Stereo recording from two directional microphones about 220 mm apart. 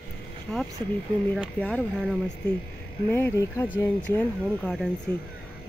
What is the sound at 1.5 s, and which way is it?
Speech, 5° left (ahead or behind).